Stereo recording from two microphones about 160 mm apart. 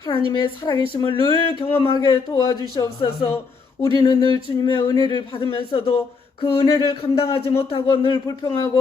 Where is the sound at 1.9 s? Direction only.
25° left (ahead or behind).